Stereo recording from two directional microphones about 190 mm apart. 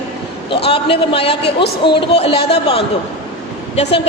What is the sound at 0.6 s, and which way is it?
A woman's voice, 30° left (ahead or behind).